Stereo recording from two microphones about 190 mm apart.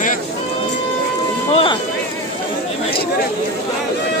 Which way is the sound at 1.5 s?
30° left (ahead or behind).